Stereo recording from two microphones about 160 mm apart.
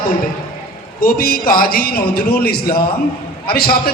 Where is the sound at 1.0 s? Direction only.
65° left (ahead or behind).